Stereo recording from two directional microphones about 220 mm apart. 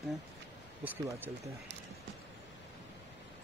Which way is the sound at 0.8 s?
10° right (ahead or behind).